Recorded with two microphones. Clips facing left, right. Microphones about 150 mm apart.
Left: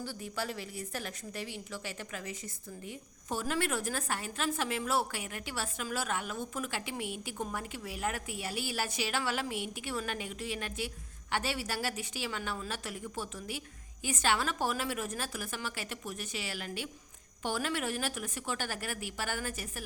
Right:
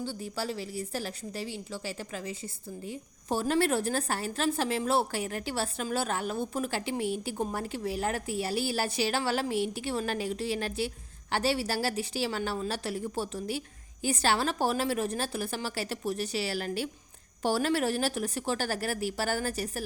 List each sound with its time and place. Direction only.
0.0 s a woman's voice: 30° right (ahead or behind)